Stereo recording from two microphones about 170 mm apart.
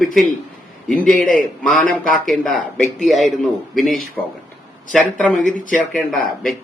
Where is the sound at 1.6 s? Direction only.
Centre (ahead or behind).